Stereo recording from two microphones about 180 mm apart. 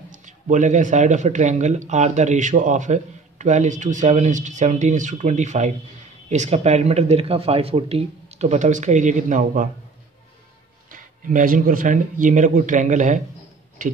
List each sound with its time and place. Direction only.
0.1 s speech: 45° right (ahead or behind)
10.9 s speech: 50° right (ahead or behind)